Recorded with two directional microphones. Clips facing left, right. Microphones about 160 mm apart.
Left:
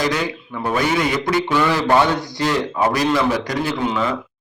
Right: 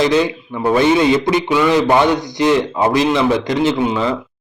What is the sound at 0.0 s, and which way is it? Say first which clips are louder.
A man's voice: right 7 dB; 25° right (ahead or behind).